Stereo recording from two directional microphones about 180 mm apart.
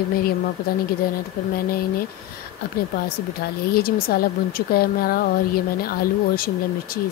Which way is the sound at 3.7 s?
55° left (ahead or behind).